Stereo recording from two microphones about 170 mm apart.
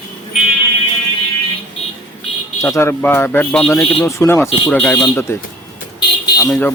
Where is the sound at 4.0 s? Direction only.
15° left (ahead or behind).